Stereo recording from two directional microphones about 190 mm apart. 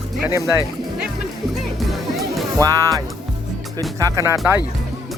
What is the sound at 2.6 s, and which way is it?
Speech, 20° right (ahead or behind).